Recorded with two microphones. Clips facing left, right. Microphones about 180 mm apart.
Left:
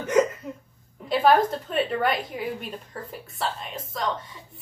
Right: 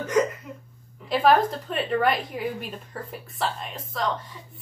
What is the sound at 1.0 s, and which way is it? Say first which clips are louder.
A woman's voice: even; centre (ahead or behind).